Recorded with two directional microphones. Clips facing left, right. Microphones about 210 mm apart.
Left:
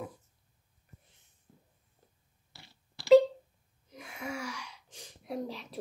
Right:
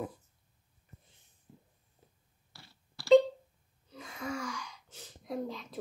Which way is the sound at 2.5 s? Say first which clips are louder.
Even; 20° left (ahead or behind).